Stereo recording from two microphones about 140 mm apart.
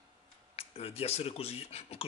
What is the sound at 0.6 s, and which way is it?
Speech, 45° left (ahead or behind).